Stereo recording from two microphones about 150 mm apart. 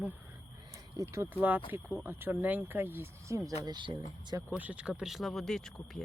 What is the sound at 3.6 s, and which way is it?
Speech, 30° right (ahead or behind).